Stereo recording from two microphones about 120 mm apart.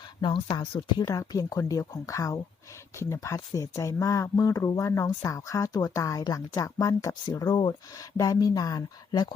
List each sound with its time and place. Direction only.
0.2 s speech: 40° left (ahead or behind)